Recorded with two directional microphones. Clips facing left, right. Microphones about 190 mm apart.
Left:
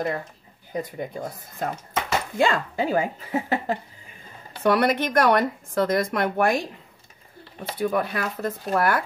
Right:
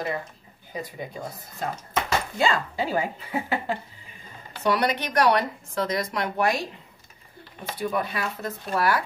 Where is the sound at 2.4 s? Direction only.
50° left (ahead or behind).